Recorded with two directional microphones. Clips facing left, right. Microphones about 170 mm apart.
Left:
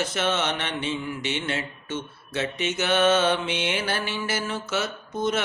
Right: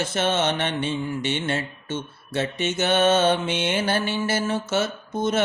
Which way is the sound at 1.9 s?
30° right (ahead or behind).